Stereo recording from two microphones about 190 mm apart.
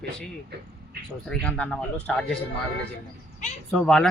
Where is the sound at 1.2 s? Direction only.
5° left (ahead or behind).